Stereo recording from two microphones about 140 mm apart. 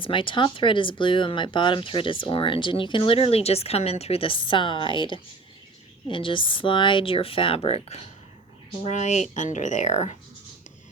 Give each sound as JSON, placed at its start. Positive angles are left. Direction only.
{"t": 0.0, "sound": "speech", "side_deg": 35}